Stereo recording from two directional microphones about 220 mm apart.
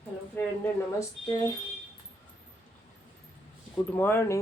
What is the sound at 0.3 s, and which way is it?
Speech, 10° left (ahead or behind).